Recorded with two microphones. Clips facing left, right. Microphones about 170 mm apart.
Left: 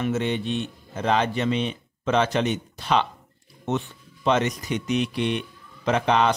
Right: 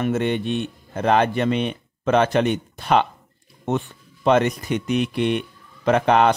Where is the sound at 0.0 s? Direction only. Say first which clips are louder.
Right 3 dB; 55° right (ahead or behind).